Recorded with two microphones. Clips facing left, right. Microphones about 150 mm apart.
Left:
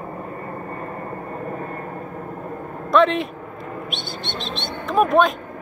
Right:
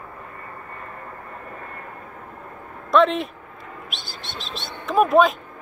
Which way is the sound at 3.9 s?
Centre (ahead or behind).